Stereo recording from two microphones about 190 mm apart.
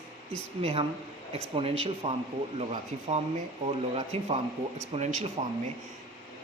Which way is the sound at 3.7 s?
35° right (ahead or behind).